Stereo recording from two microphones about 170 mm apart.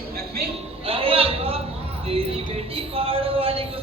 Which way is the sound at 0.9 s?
35° right (ahead or behind).